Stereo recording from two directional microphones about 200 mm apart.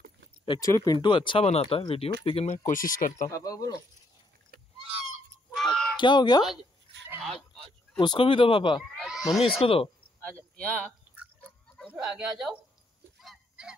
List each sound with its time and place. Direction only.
0.5 s speech: 15° left (ahead or behind); by 2.6 s 30° left (ahead or behind)
2.7 s speech: 45° left (ahead or behind)
3.3 s speech: 15° left (ahead or behind)
5.6 s a sound: centre (ahead or behind)
5.9 s speech: 20° left (ahead or behind)
8.0 s speech: 25° left (ahead or behind)
8.9 s cat: centre (ahead or behind)
9.6 s speech: 30° left (ahead or behind)
10.5 s speech: 5° left (ahead or behind)
11.9 s speech: centre (ahead or behind)
13.2 s goose: centre (ahead or behind)